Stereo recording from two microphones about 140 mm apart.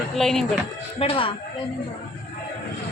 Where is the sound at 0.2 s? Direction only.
Centre (ahead or behind).